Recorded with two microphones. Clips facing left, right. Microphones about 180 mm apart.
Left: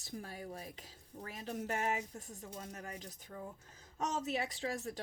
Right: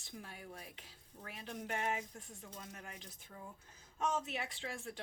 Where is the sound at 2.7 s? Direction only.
40° left (ahead or behind).